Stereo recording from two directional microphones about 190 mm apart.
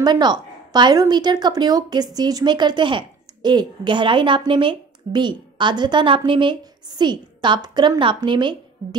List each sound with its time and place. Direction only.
0.0 s a woman's voice: 20° right (ahead or behind)